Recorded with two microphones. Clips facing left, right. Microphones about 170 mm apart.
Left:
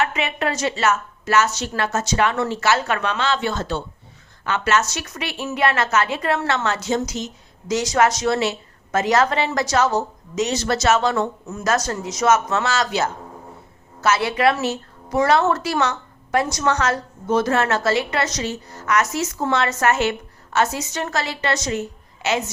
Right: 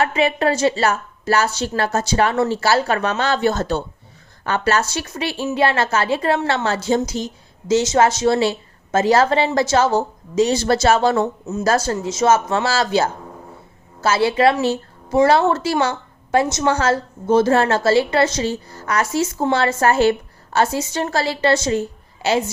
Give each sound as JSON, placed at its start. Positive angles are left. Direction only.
{"t": 0.0, "sound": "a woman's voice", "side_deg": -35}